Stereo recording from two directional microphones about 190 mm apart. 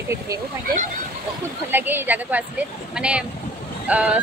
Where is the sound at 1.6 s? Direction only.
10° right (ahead or behind).